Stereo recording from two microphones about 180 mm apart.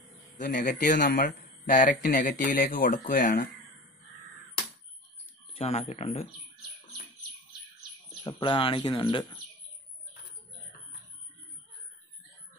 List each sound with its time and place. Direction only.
0.6 s speech: 45° left (ahead or behind)
5.6 s speech: 35° left (ahead or behind)
8.2 s speech: 25° left (ahead or behind)